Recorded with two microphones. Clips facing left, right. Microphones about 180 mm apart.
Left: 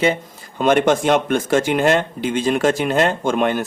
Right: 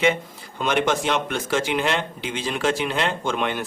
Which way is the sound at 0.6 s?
50° left (ahead or behind).